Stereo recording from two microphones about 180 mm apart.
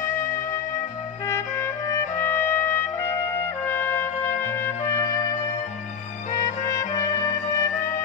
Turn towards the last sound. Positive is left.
turn(degrees=15)  # may be behind; listen again after turning